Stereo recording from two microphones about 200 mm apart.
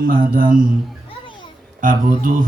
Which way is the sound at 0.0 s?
45° right (ahead or behind).